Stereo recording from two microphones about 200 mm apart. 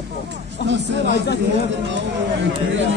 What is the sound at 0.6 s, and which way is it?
Speech, 60° right (ahead or behind).